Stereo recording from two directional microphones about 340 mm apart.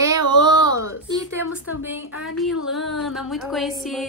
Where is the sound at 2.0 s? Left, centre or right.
Left.